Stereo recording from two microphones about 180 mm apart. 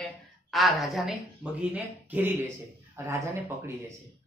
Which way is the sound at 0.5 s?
Centre (ahead or behind).